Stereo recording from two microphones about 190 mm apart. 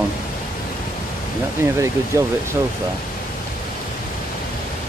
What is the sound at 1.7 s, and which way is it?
Speech, 15° right (ahead or behind).